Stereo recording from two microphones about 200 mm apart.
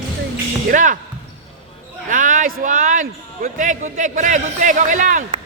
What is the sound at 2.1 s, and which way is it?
A man's voice, 40° right (ahead or behind).